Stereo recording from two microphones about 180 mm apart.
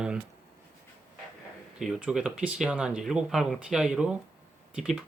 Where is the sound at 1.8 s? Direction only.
5° right (ahead or behind).